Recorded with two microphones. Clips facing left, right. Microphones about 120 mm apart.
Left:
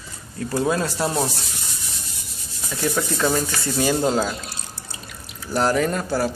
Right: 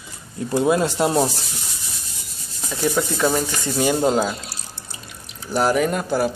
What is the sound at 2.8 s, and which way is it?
Speech, 15° right (ahead or behind).